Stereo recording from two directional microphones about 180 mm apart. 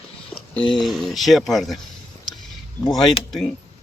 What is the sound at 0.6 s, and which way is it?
Speech, centre (ahead or behind).